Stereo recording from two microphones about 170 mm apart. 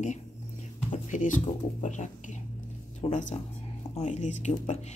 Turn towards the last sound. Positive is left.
turn(degrees=45)  # may be behind; listen again after turning